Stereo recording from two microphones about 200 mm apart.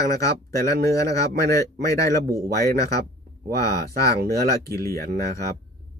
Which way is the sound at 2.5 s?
50° right (ahead or behind).